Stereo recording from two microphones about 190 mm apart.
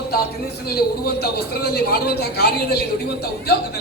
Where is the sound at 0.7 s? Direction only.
55° left (ahead or behind).